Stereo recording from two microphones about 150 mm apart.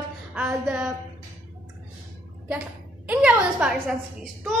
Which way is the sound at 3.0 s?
10° right (ahead or behind).